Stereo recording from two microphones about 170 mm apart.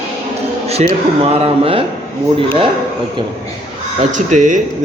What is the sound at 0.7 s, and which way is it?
Speech, 35° right (ahead or behind).